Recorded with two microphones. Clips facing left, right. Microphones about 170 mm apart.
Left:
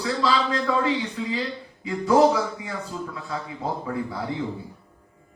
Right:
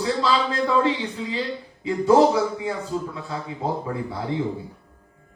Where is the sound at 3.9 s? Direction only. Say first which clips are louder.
Even; 30° right (ahead or behind).